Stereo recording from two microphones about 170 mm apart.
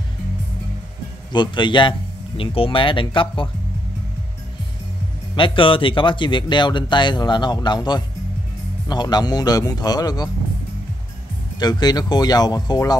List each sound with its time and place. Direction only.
1.3 s speech: 25° left (ahead or behind)
5.3 s speech: 30° left (ahead or behind)
11.6 s speech: 25° left (ahead or behind)